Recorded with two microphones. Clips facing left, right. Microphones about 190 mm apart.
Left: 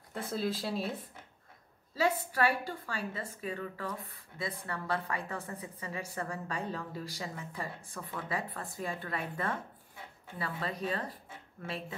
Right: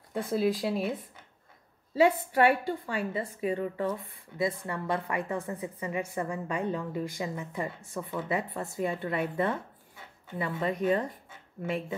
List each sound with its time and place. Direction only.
0.3 s speech: 15° right (ahead or behind)
2.0 s a woman's voice: 20° right (ahead or behind)